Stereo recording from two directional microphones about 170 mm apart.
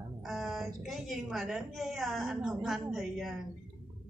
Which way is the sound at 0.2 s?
Centre (ahead or behind).